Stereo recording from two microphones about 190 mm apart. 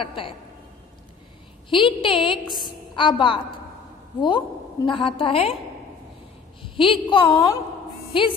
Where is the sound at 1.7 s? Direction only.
25° left (ahead or behind).